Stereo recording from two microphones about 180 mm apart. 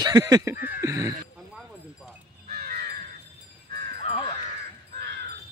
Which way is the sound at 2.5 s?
55° right (ahead or behind).